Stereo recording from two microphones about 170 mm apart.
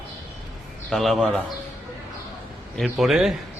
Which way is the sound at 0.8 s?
Centre (ahead or behind).